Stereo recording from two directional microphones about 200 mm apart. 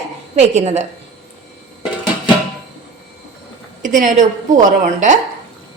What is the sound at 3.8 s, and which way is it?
A woman's voice, 40° right (ahead or behind).